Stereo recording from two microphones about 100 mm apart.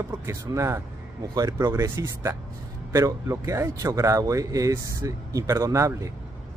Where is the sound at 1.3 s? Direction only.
40° right (ahead or behind).